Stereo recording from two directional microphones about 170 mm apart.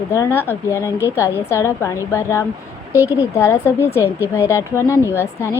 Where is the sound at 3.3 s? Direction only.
15° left (ahead or behind).